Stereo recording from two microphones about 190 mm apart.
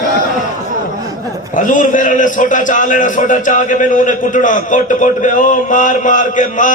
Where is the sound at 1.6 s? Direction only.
40° left (ahead or behind).